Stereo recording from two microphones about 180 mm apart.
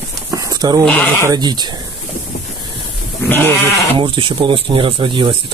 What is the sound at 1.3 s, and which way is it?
Speech, 25° right (ahead or behind).